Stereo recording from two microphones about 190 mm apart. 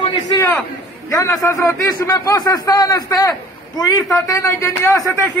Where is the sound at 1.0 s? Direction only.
15° left (ahead or behind).